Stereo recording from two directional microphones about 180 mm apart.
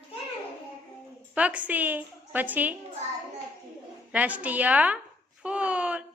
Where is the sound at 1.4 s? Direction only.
10° right (ahead or behind).